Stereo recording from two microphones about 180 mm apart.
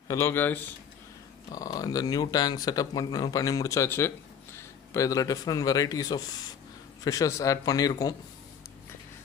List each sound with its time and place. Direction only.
0.1 s speech: 15° left (ahead or behind)